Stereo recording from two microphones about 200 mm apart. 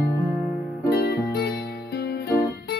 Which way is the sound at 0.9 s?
50° left (ahead or behind).